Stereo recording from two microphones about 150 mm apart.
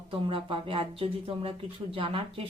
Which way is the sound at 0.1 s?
35° right (ahead or behind).